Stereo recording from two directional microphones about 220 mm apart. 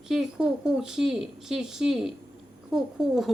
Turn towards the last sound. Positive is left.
turn(degrees=0)  # may be behind; listen again after turning